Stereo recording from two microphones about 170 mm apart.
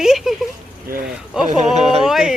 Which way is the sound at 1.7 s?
40° right (ahead or behind).